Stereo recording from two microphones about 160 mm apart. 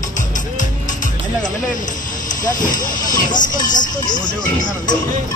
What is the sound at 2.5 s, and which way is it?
Speech, 55° left (ahead or behind).